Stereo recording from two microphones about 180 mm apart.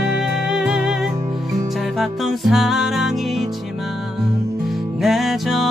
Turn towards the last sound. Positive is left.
turn(degrees=0)  # may be behind; listen again after turning